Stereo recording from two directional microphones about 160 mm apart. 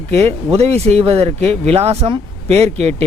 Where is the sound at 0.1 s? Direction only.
40° right (ahead or behind).